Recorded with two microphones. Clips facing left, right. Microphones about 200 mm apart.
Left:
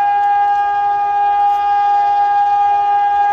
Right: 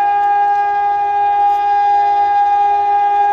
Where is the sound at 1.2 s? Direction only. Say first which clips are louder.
Right 1 dB; 10° right (ahead or behind).